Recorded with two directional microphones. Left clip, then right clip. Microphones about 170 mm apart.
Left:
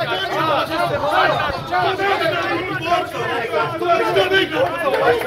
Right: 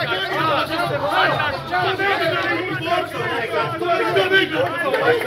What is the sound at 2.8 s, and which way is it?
Speech, 10° right (ahead or behind).